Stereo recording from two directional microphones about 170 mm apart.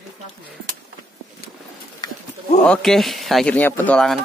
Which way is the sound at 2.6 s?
5° left (ahead or behind).